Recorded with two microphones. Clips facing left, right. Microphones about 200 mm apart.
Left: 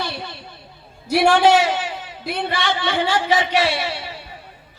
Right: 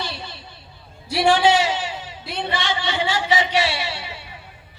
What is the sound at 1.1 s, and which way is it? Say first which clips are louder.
A man's voice: left 3 dB; 55° left (ahead or behind).